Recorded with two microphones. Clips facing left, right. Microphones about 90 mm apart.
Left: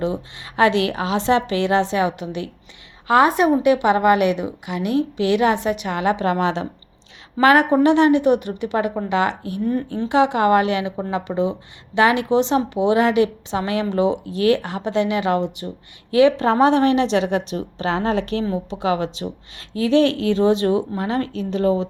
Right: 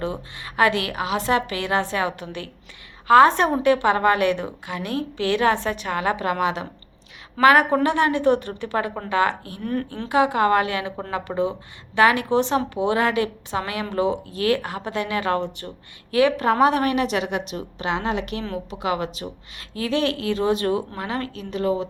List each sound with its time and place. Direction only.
0.0 s a woman's voice: 20° left (ahead or behind)